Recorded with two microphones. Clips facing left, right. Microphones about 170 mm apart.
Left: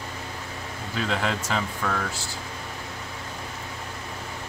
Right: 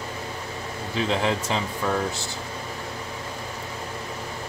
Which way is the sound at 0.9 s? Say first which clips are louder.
Right 3 dB; 20° right (ahead or behind).